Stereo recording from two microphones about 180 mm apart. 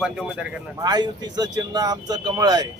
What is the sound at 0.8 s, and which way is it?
Speech, 20° right (ahead or behind).